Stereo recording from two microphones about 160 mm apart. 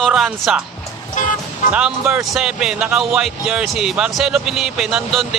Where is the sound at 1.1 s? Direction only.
55° left (ahead or behind).